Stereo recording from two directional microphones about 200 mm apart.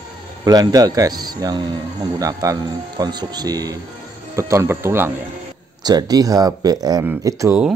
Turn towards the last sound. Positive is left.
turn(degrees=-10)  # may be behind; listen again after turning